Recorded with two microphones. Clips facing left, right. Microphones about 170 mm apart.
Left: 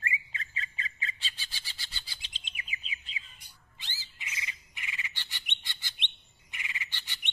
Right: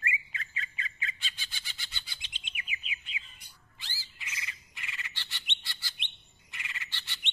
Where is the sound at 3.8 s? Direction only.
20° left (ahead or behind).